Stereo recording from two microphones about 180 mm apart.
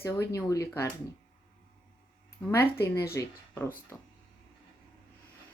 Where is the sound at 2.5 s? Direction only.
15° left (ahead or behind).